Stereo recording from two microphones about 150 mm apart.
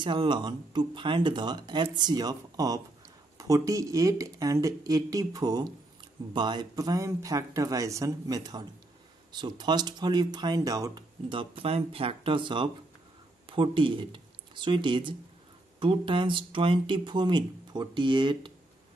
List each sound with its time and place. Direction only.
0.0 s speech: 30° right (ahead or behind)